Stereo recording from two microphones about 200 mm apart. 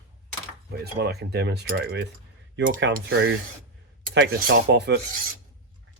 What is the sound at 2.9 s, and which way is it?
Speech, 50° right (ahead or behind).